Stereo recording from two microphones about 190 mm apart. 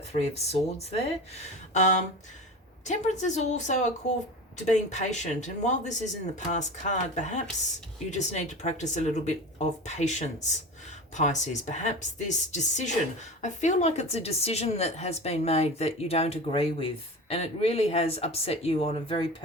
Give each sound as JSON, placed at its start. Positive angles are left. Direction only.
{"t": 0.1, "sound": "a woman's voice", "side_deg": 35}